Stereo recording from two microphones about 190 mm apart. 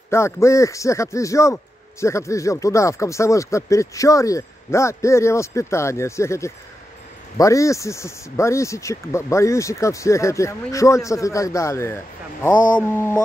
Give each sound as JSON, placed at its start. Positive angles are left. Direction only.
{"t": 0.1, "sound": "a man's voice", "side_deg": 15}